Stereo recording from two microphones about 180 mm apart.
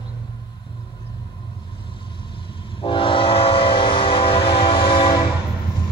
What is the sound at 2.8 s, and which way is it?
Train, 30° left (ahead or behind).